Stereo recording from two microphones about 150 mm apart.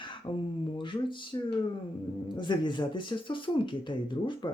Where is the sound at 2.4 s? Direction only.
30° left (ahead or behind).